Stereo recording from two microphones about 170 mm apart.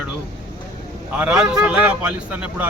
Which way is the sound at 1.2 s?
5° right (ahead or behind).